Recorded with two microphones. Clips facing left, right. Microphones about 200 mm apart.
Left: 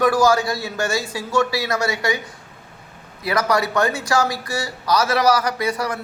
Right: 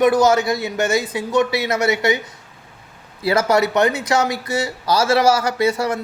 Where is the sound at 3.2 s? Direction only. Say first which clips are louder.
Right 4 dB; 25° right (ahead or behind).